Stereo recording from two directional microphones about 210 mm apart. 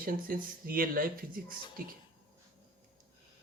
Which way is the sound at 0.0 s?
45° right (ahead or behind).